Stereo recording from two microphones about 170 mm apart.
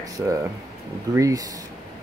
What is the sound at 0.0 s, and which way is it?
Speech, 20° right (ahead or behind).